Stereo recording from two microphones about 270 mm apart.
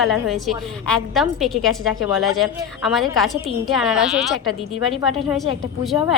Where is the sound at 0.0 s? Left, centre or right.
Centre.